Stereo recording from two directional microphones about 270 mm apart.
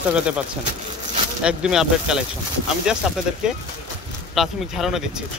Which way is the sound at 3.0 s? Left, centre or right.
Centre.